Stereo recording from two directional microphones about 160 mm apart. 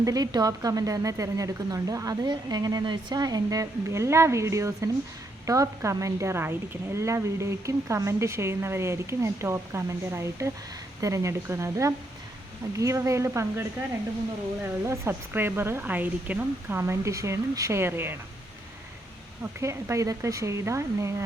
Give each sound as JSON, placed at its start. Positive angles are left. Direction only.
{"t": 0.0, "sound": "a woman's voice", "side_deg": -25}
{"t": 19.4, "sound": "a woman's voice", "side_deg": -15}